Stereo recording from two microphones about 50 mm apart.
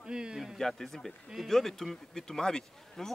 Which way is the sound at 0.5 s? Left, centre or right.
Centre.